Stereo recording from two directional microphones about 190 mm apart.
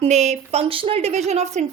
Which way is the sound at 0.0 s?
35° right (ahead or behind).